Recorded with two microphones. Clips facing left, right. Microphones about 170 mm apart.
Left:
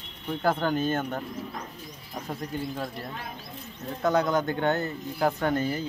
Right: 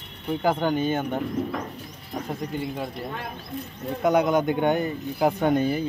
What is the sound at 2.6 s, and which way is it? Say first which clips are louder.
Speech: right 3 dB; 10° right (ahead or behind).